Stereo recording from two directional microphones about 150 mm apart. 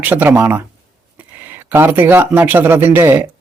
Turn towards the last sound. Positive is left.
turn(degrees=-15)  # may be behind; listen again after turning